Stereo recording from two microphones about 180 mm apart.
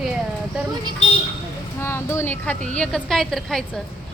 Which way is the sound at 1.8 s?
15° left (ahead or behind).